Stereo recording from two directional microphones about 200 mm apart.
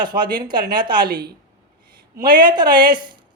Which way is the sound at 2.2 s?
20° right (ahead or behind).